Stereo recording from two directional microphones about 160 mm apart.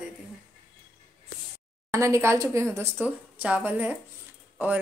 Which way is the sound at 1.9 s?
20° right (ahead or behind).